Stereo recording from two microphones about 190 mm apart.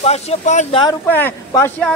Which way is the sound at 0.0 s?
35° left (ahead or behind).